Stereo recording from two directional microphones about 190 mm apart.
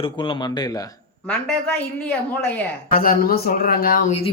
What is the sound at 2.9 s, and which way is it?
Speech, 50° left (ahead or behind).